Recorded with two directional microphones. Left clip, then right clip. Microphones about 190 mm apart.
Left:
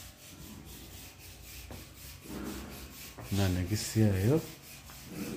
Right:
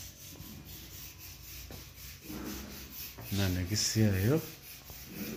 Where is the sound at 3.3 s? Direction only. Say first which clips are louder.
Even; 15° left (ahead or behind).